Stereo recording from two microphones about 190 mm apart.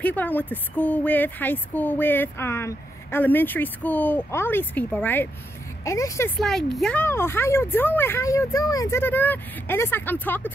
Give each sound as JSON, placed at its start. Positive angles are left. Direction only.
{"t": 0.0, "sound": "speech", "side_deg": 10}
{"t": 6.4, "sound": "speech", "side_deg": 0}